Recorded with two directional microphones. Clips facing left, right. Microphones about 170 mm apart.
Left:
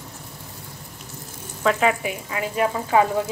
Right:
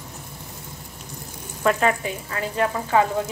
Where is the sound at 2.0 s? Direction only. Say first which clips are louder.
Left 1 dB; 15° left (ahead or behind).